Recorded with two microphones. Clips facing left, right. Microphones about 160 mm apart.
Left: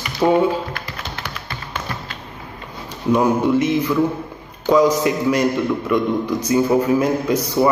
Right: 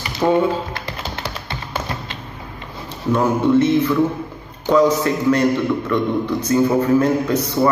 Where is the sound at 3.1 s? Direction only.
15° left (ahead or behind).